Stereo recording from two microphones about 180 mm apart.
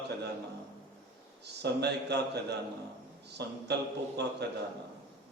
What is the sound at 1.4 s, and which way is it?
A man's voice, 65° right (ahead or behind).